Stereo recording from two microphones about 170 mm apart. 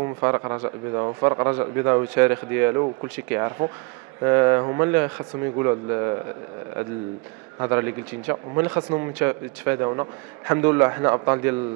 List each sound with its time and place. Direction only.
0.0 s a man's voice: 20° right (ahead or behind)
7.5 s a man's voice: 20° right (ahead or behind)